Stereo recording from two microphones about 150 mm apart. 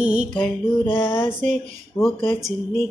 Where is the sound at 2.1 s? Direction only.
35° left (ahead or behind).